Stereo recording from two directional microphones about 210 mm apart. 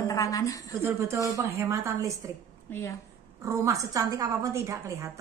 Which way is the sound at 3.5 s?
15° right (ahead or behind).